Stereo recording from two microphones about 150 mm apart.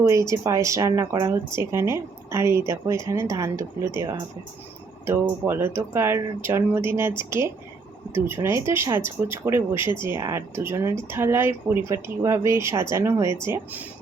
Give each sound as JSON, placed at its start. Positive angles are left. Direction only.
{"t": 0.0, "sound": "speech", "side_deg": -20}